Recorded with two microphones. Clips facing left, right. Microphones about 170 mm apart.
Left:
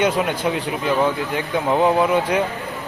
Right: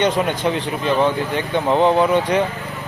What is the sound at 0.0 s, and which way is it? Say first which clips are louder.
Speech: right 1 dB; 10° left (ahead or behind).